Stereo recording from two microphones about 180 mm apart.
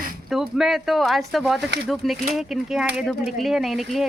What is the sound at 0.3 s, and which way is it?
Speech, centre (ahead or behind).